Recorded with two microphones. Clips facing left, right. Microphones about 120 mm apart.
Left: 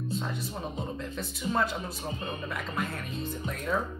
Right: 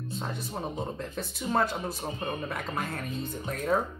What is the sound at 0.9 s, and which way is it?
Speech, 40° right (ahead or behind).